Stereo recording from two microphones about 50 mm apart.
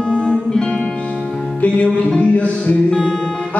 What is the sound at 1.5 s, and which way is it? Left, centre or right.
Music, left.